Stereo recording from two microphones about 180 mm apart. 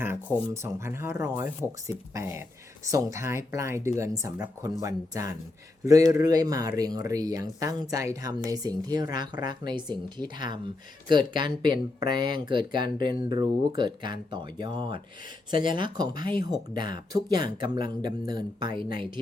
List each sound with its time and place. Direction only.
0.4 s speech: 15° right (ahead or behind)
18.7 s speech: 55° left (ahead or behind)